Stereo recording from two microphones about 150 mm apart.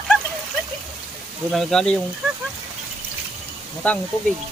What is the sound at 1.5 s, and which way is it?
Speech, centre (ahead or behind).